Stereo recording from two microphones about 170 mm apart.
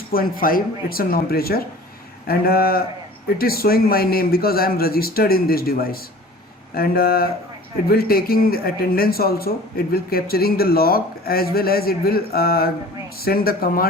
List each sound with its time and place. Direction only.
0.1 s speech: 60° left (ahead or behind)